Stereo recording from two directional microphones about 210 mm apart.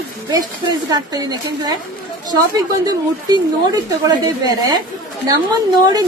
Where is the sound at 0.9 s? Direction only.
20° right (ahead or behind).